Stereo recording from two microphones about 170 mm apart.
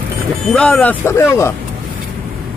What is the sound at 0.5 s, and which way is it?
Speech, 10° left (ahead or behind).